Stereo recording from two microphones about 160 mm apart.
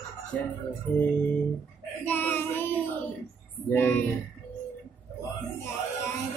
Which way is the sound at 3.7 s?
15° left (ahead or behind).